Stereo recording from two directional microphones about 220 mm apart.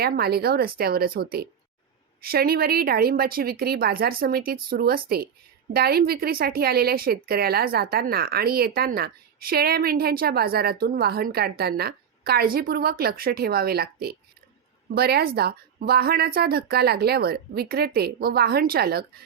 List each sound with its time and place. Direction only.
0.0 s speech: 45° right (ahead or behind)